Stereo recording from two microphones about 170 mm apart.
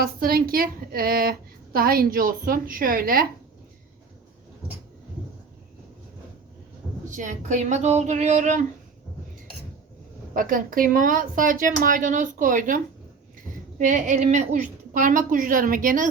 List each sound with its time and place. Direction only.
0.0 s a woman's voice: 60° right (ahead or behind)
7.1 s a woman's voice: 50° right (ahead or behind)
10.3 s a woman's voice: 55° right (ahead or behind)